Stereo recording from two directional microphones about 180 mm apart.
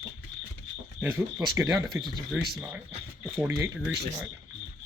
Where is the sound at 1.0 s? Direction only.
10° right (ahead or behind).